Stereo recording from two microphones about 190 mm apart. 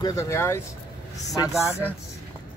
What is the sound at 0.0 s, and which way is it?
Speech, 15° left (ahead or behind).